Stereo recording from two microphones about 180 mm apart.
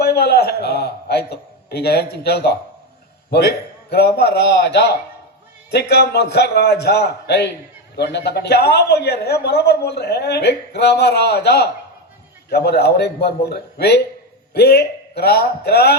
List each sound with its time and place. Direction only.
0.0 s a man's voice: 60° left (ahead or behind)